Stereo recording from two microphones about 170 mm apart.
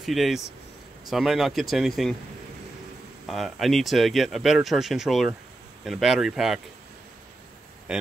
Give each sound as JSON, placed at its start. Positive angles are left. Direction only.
{"t": 0.0, "sound": "speech", "side_deg": 0}
{"t": 3.3, "sound": "speech", "side_deg": 0}
{"t": 7.9, "sound": "speech", "side_deg": -5}